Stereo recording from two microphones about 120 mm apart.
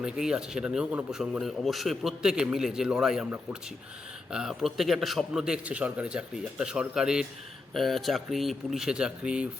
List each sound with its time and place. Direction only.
0.0 s speech: 5° right (ahead or behind)
3.2 s speech: 15° right (ahead or behind)
4.3 s speech: 5° right (ahead or behind)